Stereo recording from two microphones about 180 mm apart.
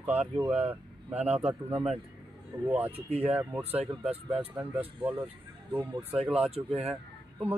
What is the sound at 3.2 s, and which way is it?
Speech, 10° right (ahead or behind).